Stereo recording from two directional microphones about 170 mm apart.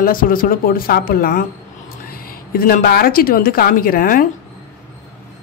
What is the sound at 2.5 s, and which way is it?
Speech, 60° left (ahead or behind).